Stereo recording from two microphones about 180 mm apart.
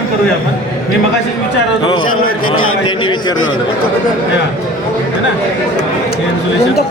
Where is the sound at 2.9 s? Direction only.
25° left (ahead or behind).